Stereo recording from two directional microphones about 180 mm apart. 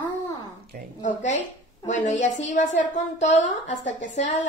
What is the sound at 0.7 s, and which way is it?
Speech, 55° right (ahead or behind).